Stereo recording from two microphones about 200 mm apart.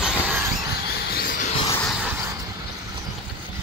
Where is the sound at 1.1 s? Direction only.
45° left (ahead or behind).